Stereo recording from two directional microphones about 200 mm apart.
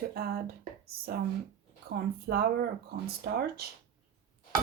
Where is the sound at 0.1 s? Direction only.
50° right (ahead or behind).